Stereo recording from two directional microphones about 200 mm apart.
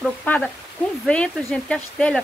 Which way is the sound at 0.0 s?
5° left (ahead or behind).